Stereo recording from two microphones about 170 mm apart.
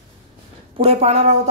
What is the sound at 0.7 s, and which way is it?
Speech, 35° right (ahead or behind).